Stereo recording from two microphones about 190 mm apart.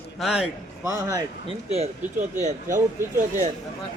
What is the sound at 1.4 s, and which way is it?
Speech, 35° right (ahead or behind).